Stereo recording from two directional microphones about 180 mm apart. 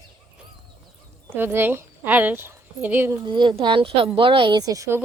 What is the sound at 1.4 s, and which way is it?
Speech, 10° right (ahead or behind).